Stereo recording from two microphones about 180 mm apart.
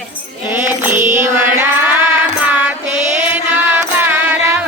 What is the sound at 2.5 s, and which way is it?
Music, 10° right (ahead or behind).